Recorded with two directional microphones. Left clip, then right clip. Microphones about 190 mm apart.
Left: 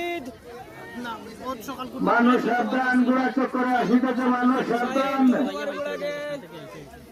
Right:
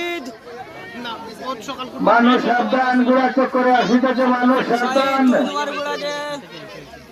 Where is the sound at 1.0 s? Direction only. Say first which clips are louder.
Right 5 dB; 50° left (ahead or behind).